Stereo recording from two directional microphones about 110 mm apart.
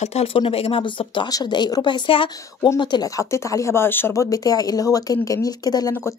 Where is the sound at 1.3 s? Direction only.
40° left (ahead or behind).